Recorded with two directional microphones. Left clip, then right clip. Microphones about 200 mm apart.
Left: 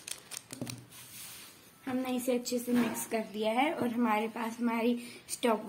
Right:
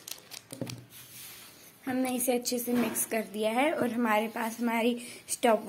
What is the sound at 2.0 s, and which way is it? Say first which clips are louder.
A woman's voice: right 2 dB; 15° right (ahead or behind).